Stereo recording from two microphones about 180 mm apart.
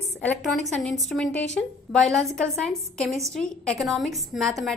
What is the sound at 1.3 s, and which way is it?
Speech, 80° left.